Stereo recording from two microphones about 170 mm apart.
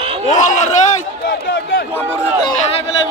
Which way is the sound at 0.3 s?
45° left (ahead or behind).